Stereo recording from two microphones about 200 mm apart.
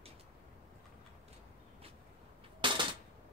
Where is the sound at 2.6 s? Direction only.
25° right (ahead or behind).